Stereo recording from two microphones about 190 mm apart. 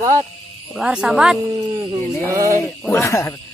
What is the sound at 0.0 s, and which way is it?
Speech, 15° right (ahead or behind).